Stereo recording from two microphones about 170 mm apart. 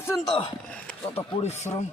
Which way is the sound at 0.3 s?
30° left (ahead or behind).